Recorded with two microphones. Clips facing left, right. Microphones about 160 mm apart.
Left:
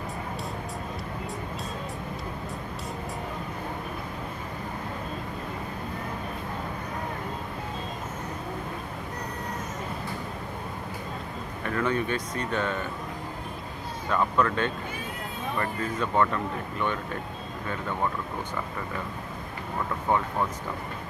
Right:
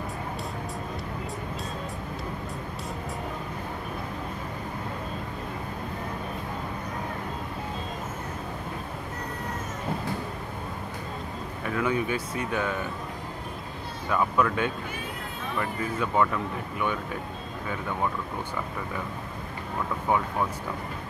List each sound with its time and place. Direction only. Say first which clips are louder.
11.6 s speech: even; 10° right (ahead or behind)
14.1 s speech: even; 5° right (ahead or behind)